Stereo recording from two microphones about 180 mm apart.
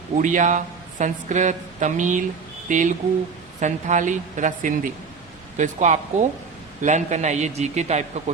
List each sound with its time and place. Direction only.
0.2 s a woman's voice: 45° right (ahead or behind)